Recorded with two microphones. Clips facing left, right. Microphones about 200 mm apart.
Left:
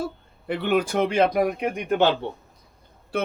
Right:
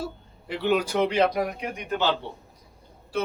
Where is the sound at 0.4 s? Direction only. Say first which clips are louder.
Left 2 dB; 55° left (ahead or behind).